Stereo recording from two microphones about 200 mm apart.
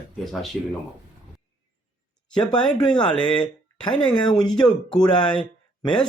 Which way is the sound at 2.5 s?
20° left (ahead or behind).